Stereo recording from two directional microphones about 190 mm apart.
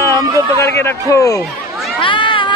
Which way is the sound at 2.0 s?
25° left (ahead or behind).